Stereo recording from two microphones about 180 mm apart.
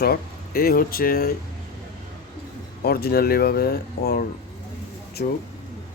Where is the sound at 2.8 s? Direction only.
55° left (ahead or behind).